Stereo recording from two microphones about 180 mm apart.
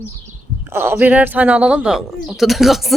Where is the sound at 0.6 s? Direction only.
10° right (ahead or behind).